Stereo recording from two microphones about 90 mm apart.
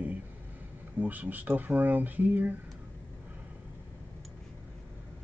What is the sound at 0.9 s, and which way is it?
Speech, 20° right (ahead or behind).